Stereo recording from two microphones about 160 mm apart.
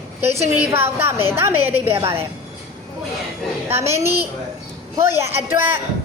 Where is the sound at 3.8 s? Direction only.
15° right (ahead or behind).